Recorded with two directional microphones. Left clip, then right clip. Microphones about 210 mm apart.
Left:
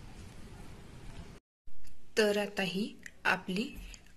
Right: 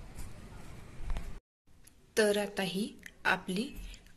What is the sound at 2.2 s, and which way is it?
A woman's voice, 5° right (ahead or behind).